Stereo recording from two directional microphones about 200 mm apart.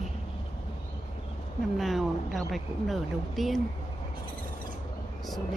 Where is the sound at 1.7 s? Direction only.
Centre (ahead or behind).